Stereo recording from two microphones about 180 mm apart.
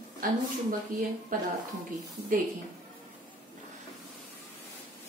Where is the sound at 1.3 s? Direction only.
50° right (ahead or behind).